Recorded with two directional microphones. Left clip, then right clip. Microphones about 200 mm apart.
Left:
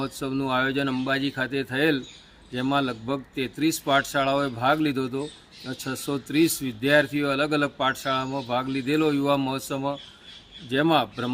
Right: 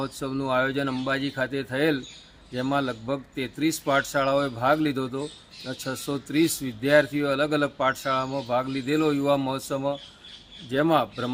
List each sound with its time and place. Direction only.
0.0 s a man's voice: 10° left (ahead or behind)